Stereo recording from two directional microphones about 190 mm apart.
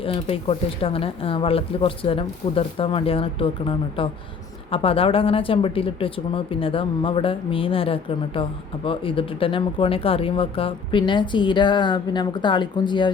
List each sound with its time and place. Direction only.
0.0 s speech: 30° left (ahead or behind)